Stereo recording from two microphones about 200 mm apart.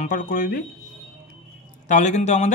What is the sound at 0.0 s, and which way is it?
Speech, 40° left (ahead or behind).